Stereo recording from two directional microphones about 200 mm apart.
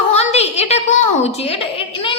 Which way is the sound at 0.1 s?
35° left (ahead or behind).